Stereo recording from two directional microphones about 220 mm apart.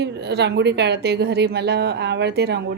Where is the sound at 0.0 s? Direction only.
50° right (ahead or behind).